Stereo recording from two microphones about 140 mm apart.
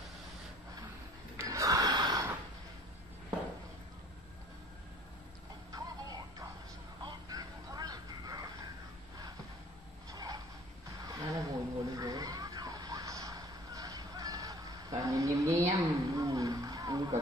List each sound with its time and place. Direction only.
1.4 s gasp: 20° right (ahead or behind)
5.7 s music: 25° right (ahead or behind)
7.0 s vehicle: 30° right (ahead or behind)
10.1 s a sound: 25° right (ahead or behind)